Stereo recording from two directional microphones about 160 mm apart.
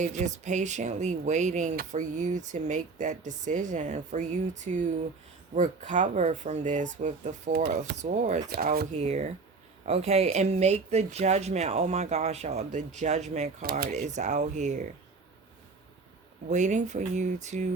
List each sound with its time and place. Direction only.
0.0 s speech: 50° right (ahead or behind)
8.4 s speech: 70° right (ahead or behind)
9.0 s speech: 45° right (ahead or behind)
13.6 s speech: 70° right (ahead or behind)
13.9 s speech: 45° right (ahead or behind)
16.5 s speech: 50° right (ahead or behind)